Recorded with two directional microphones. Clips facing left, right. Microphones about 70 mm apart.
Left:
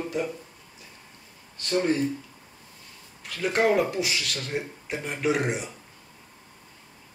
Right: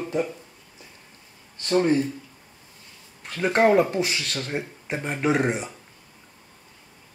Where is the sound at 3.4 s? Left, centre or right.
Right.